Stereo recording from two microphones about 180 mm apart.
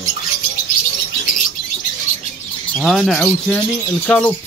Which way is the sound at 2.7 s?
Centre (ahead or behind).